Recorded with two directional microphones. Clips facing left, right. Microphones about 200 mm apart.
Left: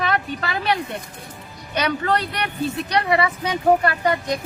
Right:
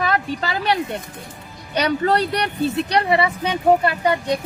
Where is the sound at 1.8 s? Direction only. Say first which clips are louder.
Right 3 dB; 35° right (ahead or behind).